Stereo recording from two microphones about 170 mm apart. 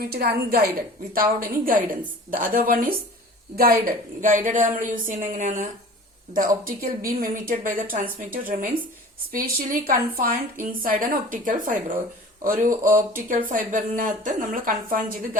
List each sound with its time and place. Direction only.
0.0 s a woman's voice: 60° right (ahead or behind)